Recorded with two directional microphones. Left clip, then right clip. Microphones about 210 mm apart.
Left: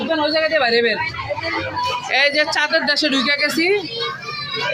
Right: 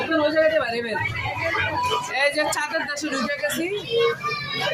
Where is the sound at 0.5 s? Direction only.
15° left (ahead or behind).